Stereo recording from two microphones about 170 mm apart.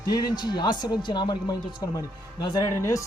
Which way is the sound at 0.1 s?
25° left (ahead or behind).